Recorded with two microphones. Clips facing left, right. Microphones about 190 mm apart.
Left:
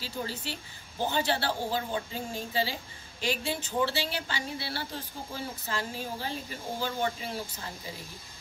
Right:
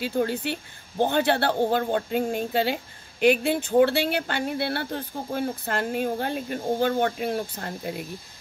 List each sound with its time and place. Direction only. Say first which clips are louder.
0.0 s speech: right 11 dB; 60° right (ahead or behind)